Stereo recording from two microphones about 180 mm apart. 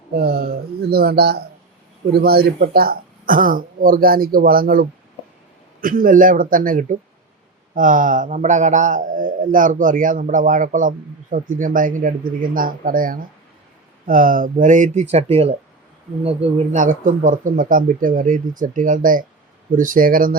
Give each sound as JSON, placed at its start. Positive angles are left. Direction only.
{"t": 0.2, "sound": "a man's voice", "side_deg": -60}